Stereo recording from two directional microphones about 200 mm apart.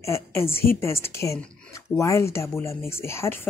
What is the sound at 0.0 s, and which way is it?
Speech, 15° left (ahead or behind).